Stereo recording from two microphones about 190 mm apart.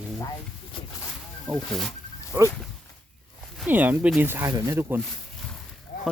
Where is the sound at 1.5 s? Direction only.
Centre (ahead or behind).